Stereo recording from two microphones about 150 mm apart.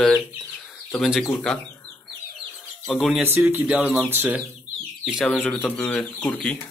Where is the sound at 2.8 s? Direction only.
Centre (ahead or behind).